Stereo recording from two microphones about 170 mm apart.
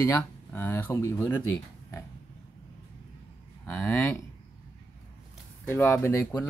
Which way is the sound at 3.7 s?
5° left (ahead or behind).